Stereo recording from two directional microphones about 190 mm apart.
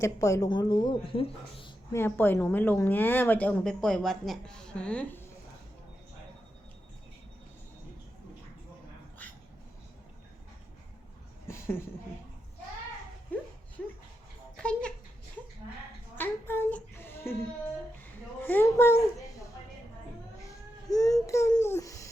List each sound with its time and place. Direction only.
0.0 s a woman's voice: 15° left (ahead or behind)
1.9 s a woman's voice: 10° left (ahead or behind)
9.2 s dog: 10° left (ahead or behind)
11.4 s a sound: 15° left (ahead or behind)
14.5 s a sound: 5° left (ahead or behind)
16.1 s child singing: 10° left (ahead or behind)
18.4 s a woman's voice: 10° left (ahead or behind)
20.5 s babbling: 20° left (ahead or behind)